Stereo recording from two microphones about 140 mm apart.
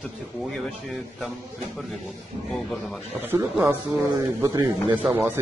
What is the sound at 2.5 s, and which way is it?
Speech, 5° left (ahead or behind).